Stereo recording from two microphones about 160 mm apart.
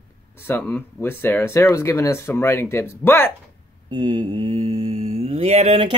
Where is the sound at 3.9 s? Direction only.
30° right (ahead or behind).